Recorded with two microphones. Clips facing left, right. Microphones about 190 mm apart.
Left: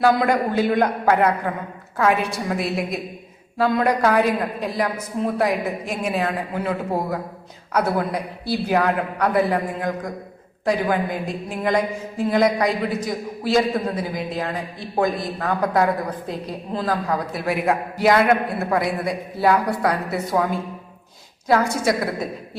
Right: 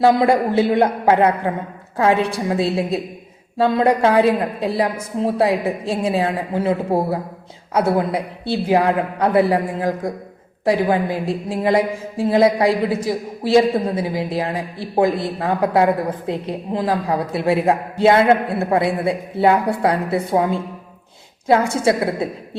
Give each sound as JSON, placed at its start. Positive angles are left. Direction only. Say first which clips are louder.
{"t": 0.0, "sound": "a woman's voice", "louder": "right 4 dB", "side_deg": -25}